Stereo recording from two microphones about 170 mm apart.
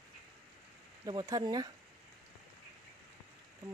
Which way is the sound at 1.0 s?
25° right (ahead or behind).